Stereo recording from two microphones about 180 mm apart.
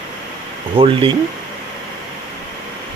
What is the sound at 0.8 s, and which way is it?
Speech, 30° right (ahead or behind).